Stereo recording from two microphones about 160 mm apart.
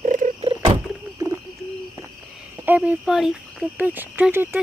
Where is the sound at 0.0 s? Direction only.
55° right (ahead or behind).